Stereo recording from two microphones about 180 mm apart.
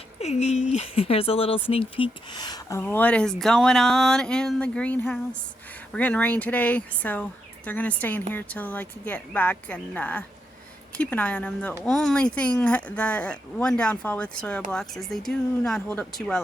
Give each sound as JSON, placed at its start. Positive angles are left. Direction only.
{"t": 0.2, "sound": "speech", "side_deg": 40}